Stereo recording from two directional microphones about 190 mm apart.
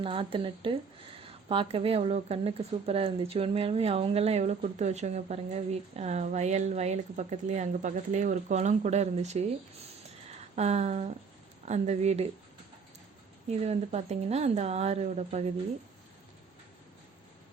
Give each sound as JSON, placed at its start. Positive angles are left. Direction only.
{"t": 0.0, "sound": "speech", "side_deg": -30}
{"t": 10.5, "sound": "speech", "side_deg": -35}
{"t": 13.5, "sound": "speech", "side_deg": -35}